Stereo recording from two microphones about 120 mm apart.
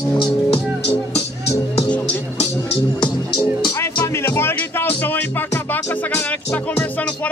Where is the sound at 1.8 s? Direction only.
10° left (ahead or behind).